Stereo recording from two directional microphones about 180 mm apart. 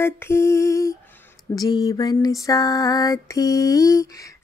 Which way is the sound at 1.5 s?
20° left (ahead or behind).